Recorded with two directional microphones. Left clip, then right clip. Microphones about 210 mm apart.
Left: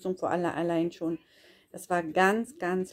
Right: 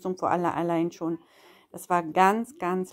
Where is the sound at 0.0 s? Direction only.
25° right (ahead or behind).